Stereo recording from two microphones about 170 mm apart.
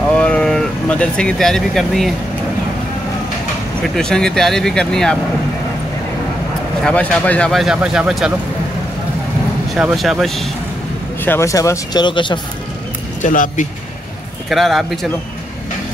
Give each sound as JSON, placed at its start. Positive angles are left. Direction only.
{"t": 0.1, "sound": "vehicle", "side_deg": 5}
{"t": 3.8, "sound": "speech", "side_deg": 5}
{"t": 6.8, "sound": "speech", "side_deg": 5}
{"t": 9.8, "sound": "speech", "side_deg": -5}
{"t": 11.2, "sound": "speech", "side_deg": 15}
{"t": 13.2, "sound": "speech", "side_deg": 50}
{"t": 14.5, "sound": "speech", "side_deg": 0}